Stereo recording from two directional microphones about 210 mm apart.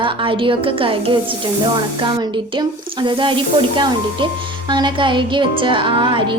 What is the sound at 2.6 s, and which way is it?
Speech, 25° right (ahead or behind).